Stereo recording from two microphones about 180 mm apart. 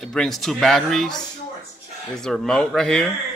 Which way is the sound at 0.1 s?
5° left (ahead or behind).